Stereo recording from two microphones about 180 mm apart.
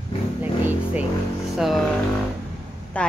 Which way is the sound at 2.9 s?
5° left (ahead or behind).